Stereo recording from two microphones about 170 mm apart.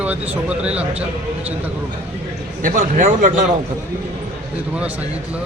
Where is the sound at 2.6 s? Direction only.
50° right (ahead or behind).